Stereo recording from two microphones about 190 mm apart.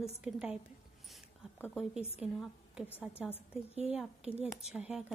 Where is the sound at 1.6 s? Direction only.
Centre (ahead or behind).